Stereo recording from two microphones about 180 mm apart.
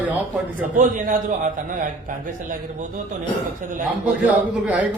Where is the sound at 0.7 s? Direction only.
45° right (ahead or behind).